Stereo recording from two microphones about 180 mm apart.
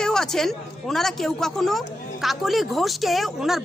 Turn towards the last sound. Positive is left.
turn(degrees=0)  # may be behind; listen again after turning